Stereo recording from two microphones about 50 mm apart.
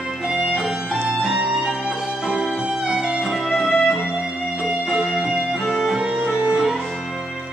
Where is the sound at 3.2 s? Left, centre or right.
Centre.